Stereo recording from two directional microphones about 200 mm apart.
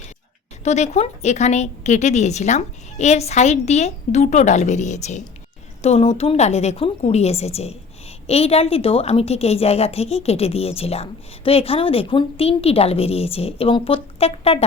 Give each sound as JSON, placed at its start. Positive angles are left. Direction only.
{"t": 0.6, "sound": "a woman's voice", "side_deg": 35}